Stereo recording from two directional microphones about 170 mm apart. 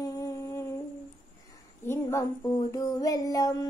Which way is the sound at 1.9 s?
15° left (ahead or behind).